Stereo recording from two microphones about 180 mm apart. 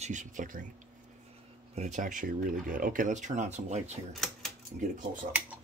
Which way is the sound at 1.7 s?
40° right (ahead or behind).